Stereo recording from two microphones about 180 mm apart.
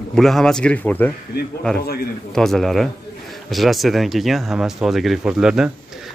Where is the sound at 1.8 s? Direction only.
60° left (ahead or behind).